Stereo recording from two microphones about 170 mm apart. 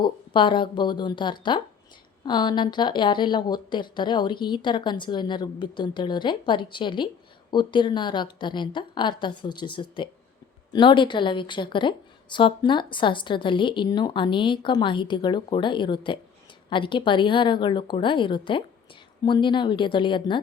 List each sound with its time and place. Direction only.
0.0 s a woman's voice: 30° left (ahead or behind)